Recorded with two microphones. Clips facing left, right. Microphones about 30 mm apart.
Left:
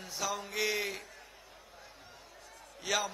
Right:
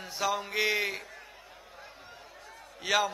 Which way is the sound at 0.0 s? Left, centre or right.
Right.